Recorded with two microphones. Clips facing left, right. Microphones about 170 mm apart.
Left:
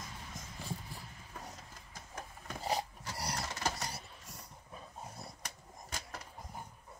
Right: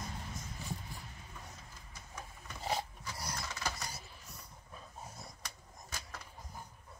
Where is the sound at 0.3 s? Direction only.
90° left.